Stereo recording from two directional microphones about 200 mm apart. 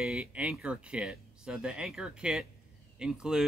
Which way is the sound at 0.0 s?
5° right (ahead or behind).